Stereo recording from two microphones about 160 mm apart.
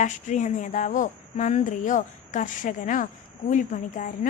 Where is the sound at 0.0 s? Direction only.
50° left (ahead or behind).